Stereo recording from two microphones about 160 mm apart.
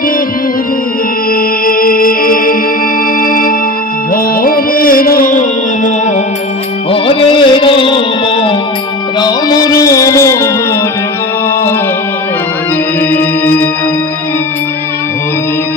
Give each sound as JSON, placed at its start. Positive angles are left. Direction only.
{"t": 1.7, "sound": "music", "side_deg": 60}
{"t": 6.9, "sound": "music", "side_deg": 35}
{"t": 13.1, "sound": "music", "side_deg": 10}